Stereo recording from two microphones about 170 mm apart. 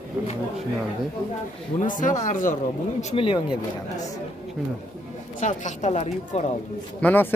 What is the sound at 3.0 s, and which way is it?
Speech, 35° left (ahead or behind).